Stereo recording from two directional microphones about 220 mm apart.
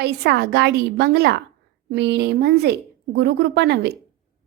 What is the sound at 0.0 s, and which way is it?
A woman's voice, 50° right (ahead or behind).